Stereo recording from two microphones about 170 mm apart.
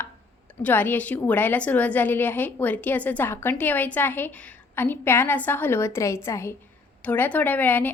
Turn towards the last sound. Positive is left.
turn(degrees=10)  # may be behind; listen again after turning